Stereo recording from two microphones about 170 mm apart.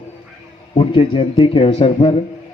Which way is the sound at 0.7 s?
30° left (ahead or behind).